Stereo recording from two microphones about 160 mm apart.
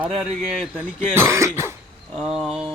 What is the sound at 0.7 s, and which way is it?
Speech, 10° right (ahead or behind).